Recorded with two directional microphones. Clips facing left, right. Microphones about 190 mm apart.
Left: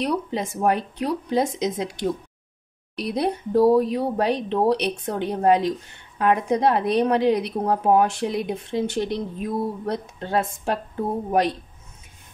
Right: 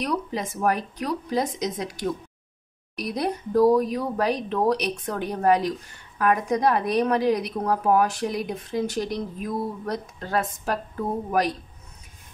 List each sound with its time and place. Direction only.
0.0 s speech: 25° left (ahead or behind)